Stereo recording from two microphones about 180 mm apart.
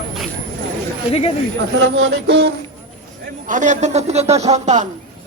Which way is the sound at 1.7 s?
90° right.